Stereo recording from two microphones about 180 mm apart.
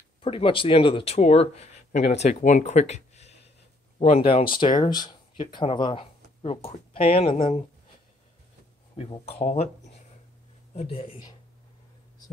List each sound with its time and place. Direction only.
0.2 s speech: 30° left (ahead or behind)
8.9 s speech: 35° left (ahead or behind)
10.7 s speech: 35° left (ahead or behind)